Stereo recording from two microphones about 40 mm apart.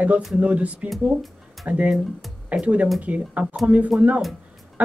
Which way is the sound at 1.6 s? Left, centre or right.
Right.